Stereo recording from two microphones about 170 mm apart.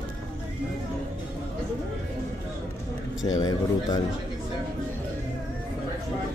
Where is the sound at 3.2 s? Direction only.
20° left (ahead or behind).